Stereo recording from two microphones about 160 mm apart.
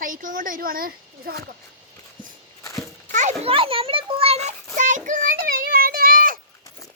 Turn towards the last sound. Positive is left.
turn(degrees=-60)  # may be behind; listen again after turning